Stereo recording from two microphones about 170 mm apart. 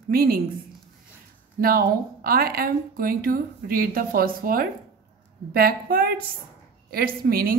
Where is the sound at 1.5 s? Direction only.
60° right (ahead or behind).